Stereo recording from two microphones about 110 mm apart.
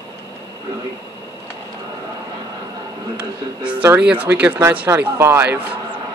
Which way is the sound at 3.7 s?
20° right (ahead or behind).